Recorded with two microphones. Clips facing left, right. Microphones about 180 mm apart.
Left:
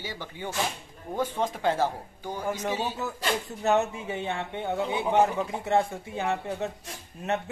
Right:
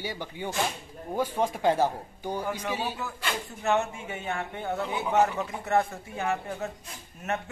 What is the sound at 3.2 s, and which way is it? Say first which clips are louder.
Speech: left 4 dB; 35° left (ahead or behind).